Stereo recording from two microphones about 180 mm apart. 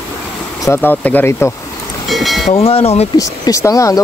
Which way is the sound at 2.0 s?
Centre (ahead or behind).